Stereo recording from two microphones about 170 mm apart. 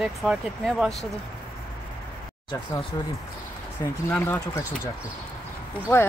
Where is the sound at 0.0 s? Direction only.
Centre (ahead or behind).